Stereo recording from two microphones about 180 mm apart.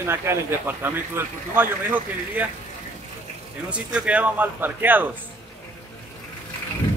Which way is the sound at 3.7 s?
5° right (ahead or behind).